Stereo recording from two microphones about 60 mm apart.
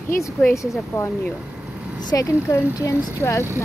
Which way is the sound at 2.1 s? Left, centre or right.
Left.